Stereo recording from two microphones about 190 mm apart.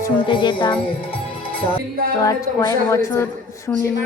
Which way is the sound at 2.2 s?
15° left (ahead or behind).